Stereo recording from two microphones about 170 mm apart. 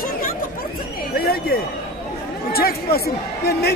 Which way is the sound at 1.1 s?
65° left (ahead or behind).